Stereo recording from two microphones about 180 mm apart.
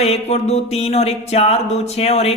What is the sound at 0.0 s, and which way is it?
Speech, 35° left (ahead or behind).